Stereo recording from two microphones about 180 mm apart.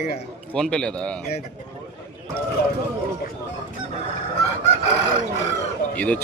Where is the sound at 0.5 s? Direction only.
5° left (ahead or behind).